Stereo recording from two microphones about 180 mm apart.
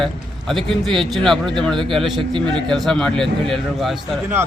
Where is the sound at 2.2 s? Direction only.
25° right (ahead or behind).